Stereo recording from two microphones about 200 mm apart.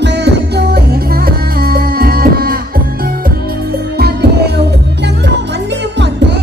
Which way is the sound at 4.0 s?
55° right (ahead or behind).